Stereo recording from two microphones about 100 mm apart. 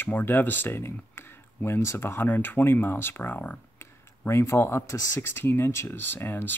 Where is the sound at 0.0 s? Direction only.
20° left (ahead or behind).